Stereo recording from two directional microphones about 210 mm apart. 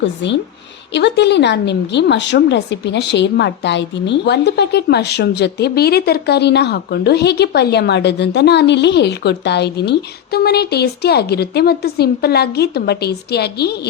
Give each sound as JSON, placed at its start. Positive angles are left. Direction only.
{"t": 0.0, "sound": "a woman's voice", "side_deg": 60}